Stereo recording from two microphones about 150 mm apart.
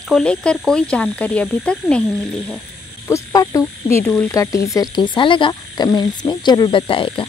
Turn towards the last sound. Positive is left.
turn(degrees=35)  # may be behind; listen again after turning